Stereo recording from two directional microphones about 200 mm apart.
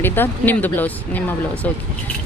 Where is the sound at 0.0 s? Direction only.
10° left (ahead or behind).